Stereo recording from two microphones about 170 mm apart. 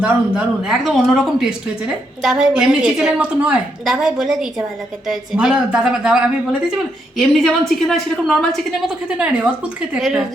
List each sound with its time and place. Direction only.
0.0 s a woman's voice: 5° right (ahead or behind)